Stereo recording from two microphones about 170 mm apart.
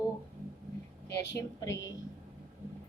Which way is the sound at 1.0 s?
90° left.